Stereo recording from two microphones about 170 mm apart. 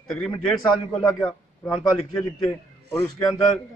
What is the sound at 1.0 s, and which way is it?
Speech, 5° left (ahead or behind).